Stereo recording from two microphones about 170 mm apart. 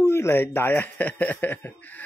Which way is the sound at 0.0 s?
15° left (ahead or behind).